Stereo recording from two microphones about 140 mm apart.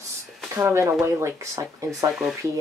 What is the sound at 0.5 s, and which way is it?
Speech, 20° right (ahead or behind).